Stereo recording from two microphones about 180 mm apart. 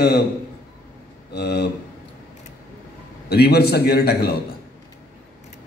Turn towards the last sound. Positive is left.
turn(degrees=60)  # may be behind; listen again after turning